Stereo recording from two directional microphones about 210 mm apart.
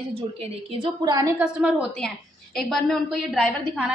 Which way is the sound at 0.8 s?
20° right (ahead or behind).